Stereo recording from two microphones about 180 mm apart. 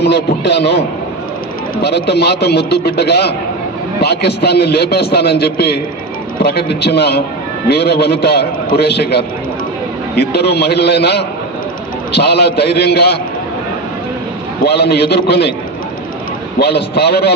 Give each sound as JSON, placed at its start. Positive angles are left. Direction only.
{"t": 0.0, "sound": "a man's voice", "side_deg": 65}
{"t": 2.0, "sound": "a man's voice", "side_deg": 65}
{"t": 14.6, "sound": "a man's voice", "side_deg": 60}
{"t": 16.6, "sound": "a man's voice", "side_deg": 65}